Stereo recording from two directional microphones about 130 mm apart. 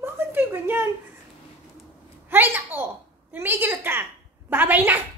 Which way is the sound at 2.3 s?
15° right (ahead or behind).